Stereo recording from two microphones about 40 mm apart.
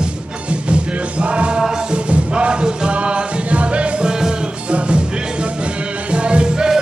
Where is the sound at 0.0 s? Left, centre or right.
Right.